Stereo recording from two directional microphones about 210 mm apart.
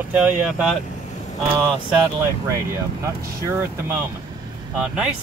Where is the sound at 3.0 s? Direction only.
10° right (ahead or behind).